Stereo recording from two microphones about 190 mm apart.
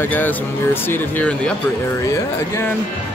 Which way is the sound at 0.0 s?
10° left (ahead or behind).